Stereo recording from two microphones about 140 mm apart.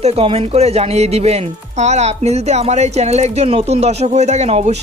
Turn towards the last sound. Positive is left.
turn(degrees=-50)  # may be behind; listen again after turning